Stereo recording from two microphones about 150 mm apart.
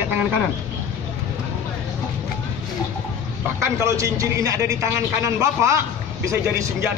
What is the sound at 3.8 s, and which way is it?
A man's voice, 20° right (ahead or behind).